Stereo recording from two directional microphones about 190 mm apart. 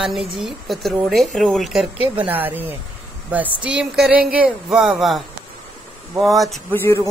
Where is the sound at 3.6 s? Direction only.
5° right (ahead or behind).